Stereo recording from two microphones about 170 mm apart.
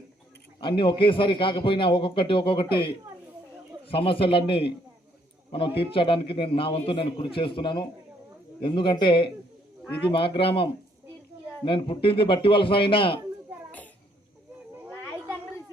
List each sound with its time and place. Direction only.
0.6 s a man's voice: 30° left (ahead or behind)
3.8 s a man's voice: 35° left (ahead or behind)